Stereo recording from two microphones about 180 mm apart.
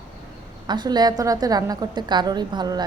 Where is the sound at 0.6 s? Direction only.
25° right (ahead or behind).